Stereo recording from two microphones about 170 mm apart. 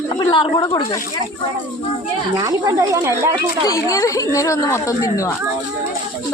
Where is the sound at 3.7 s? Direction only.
20° left (ahead or behind).